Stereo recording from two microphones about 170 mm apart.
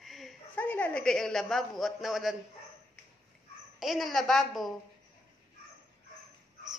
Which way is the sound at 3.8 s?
Centre (ahead or behind).